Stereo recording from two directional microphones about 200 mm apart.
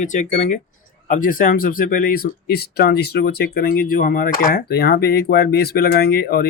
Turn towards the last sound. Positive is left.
turn(degrees=50)  # may be behind; listen again after turning